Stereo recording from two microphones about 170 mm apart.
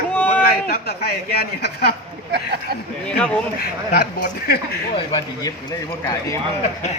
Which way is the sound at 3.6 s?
60° left (ahead or behind).